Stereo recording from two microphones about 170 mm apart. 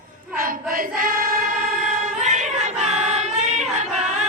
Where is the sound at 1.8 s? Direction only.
45° right (ahead or behind).